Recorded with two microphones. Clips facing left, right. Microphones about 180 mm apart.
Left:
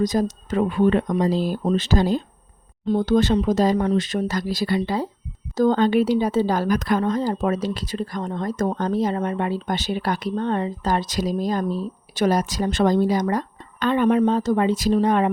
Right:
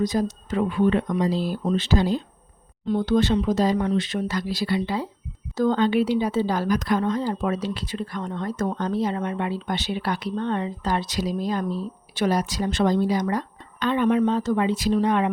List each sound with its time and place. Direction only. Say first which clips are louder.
0.0 s speech: left 2 dB; 45° left (ahead or behind)